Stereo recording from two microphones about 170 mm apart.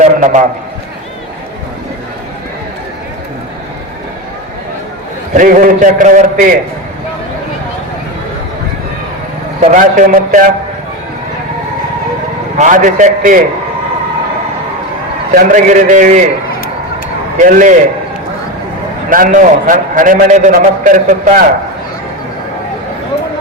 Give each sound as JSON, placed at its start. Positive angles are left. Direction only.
{"t": 0.0, "sound": "a sound", "side_deg": -45}
{"t": 5.3, "sound": "a man's voice", "side_deg": -55}
{"t": 9.6, "sound": "speech", "side_deg": -45}
{"t": 12.5, "sound": "a man's voice", "side_deg": -50}
{"t": 15.4, "sound": "a man's voice", "side_deg": -50}
{"t": 17.4, "sound": "a man's voice", "side_deg": -45}
{"t": 19.1, "sound": "a man's voice", "side_deg": -50}